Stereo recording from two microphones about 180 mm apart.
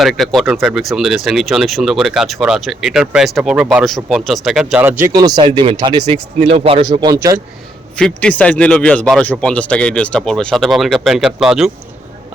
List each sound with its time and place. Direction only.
0.0 s speech: centre (ahead or behind); by 7.4 s 20° right (ahead or behind)
7.9 s speech: 5° left (ahead or behind)